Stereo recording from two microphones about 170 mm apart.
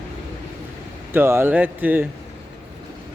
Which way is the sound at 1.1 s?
15° right (ahead or behind).